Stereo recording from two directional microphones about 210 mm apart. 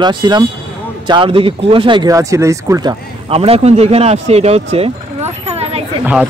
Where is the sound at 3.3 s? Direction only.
30° right (ahead or behind).